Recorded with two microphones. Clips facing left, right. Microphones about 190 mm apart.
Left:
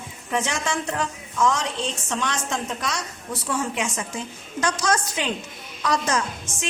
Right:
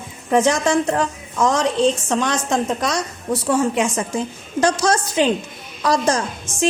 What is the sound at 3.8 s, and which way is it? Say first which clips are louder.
Speech: right 7 dB; 50° right (ahead or behind).